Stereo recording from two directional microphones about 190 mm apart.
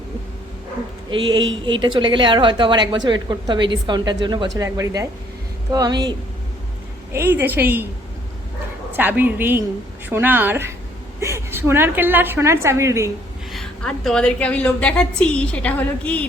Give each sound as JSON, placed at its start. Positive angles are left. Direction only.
{"t": 1.1, "sound": "a woman's voice", "side_deg": -25}
{"t": 7.1, "sound": "a woman's voice", "side_deg": -10}
{"t": 8.9, "sound": "a woman's voice", "side_deg": -10}
{"t": 13.5, "sound": "a woman's voice", "side_deg": 0}